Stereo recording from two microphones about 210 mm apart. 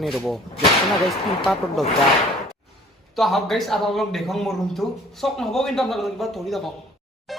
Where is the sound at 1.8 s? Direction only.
Centre (ahead or behind).